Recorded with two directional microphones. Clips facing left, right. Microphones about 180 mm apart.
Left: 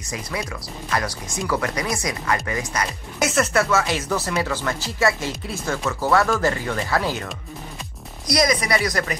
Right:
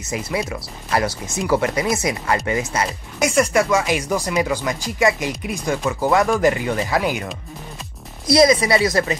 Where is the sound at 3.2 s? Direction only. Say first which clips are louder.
Right 3 dB; 10° right (ahead or behind).